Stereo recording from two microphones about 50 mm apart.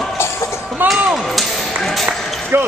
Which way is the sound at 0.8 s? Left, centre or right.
Right.